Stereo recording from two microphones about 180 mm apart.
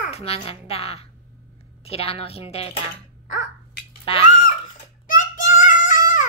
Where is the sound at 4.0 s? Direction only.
30° left (ahead or behind).